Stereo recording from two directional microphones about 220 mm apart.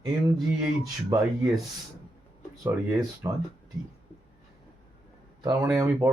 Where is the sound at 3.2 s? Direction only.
15° right (ahead or behind).